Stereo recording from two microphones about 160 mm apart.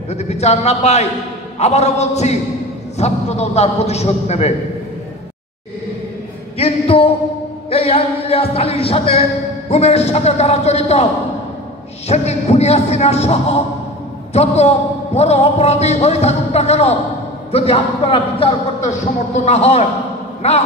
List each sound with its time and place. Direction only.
0.1 s speech: 45° left (ahead or behind)
3.0 s music: 40° left (ahead or behind)
6.6 s a sound: 35° left (ahead or behind)
7.7 s music: 40° left (ahead or behind)
12.1 s music: 40° left (ahead or behind)
14.3 s speech: 40° left (ahead or behind)
15.1 s music: 40° left (ahead or behind)